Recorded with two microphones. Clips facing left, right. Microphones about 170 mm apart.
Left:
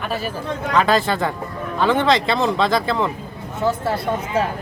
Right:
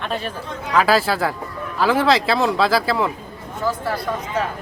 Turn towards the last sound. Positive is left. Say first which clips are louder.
# left 3 dB
turn(degrees=25)  # may be behind; listen again after turning